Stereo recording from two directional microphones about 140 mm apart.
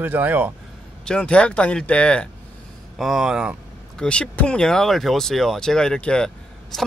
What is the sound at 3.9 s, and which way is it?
Speech, 5° left (ahead or behind).